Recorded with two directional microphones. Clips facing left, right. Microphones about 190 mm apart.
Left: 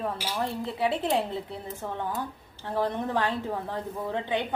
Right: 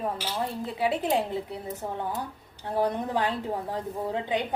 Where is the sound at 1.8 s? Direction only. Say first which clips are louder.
Left 1 dB; 25° right (ahead or behind).